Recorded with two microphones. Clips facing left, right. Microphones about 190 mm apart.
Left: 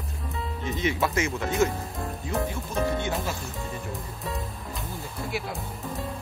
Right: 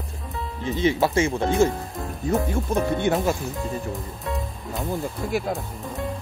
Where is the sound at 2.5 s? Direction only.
55° right (ahead or behind).